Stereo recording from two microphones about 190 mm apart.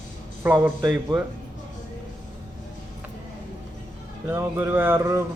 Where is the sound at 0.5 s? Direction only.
20° right (ahead or behind).